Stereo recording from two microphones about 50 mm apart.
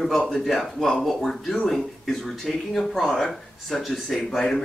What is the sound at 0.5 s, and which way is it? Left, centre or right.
Speech, centre.